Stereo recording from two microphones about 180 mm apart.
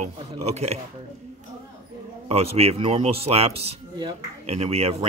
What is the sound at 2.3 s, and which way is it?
Speech, 35° right (ahead or behind).